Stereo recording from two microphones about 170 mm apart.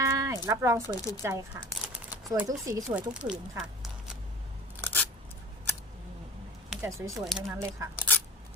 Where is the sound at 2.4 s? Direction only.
20° right (ahead or behind).